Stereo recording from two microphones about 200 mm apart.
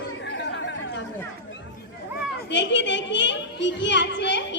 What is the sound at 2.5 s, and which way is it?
Children playing, 60° left (ahead or behind).